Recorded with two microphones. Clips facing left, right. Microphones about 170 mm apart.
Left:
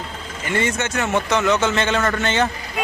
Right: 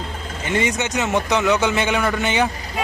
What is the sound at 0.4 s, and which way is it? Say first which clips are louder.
A man's voice: right 1 dB; 15° right (ahead or behind).